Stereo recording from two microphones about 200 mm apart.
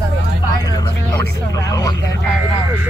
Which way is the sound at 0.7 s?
20° left (ahead or behind).